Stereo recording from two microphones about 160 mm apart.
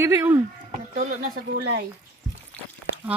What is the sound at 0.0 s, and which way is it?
Speech, 15° right (ahead or behind).